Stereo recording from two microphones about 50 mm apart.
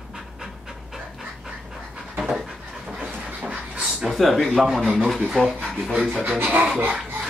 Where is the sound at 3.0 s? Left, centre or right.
Right.